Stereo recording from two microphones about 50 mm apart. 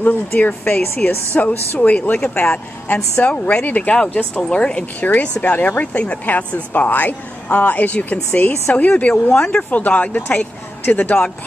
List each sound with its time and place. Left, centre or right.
0.0 s speech: left; by 4.8 s centre
5.0 s speech: left